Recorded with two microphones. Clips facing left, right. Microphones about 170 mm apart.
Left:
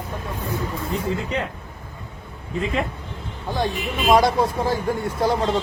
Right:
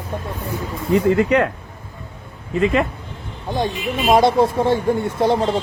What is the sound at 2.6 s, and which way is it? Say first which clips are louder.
Speech: right 7 dB; 75° right (ahead or behind).